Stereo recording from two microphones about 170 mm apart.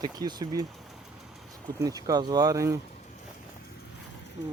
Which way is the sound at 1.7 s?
20° right (ahead or behind).